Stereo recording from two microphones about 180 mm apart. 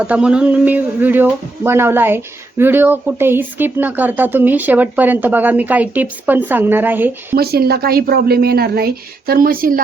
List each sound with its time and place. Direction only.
0.1 s speech: 5° right (ahead or behind)
7.3 s a woman's voice: 60° right (ahead or behind)